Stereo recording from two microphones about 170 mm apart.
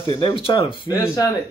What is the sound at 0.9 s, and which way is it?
Speech, 20° left (ahead or behind).